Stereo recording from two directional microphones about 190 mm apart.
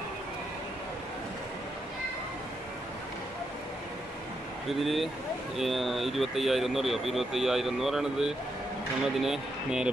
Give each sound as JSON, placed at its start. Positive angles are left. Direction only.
{"t": 4.6, "sound": "speech", "side_deg": 0}